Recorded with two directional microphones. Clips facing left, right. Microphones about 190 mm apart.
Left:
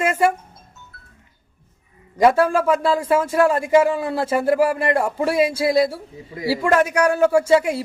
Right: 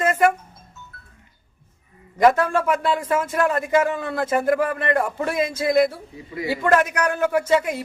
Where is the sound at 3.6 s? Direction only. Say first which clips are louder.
Left 4 dB; 15° left (ahead or behind).